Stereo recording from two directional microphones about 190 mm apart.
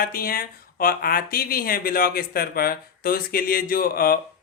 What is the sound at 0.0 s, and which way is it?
Speech, 50° left (ahead or behind).